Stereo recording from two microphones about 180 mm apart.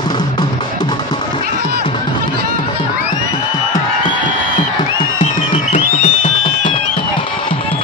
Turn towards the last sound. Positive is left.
turn(degrees=40)  # may be behind; listen again after turning